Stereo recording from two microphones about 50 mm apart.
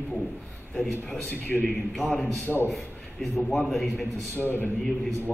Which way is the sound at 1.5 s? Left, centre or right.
Centre.